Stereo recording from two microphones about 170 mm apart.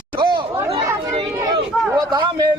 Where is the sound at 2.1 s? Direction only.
25° right (ahead or behind).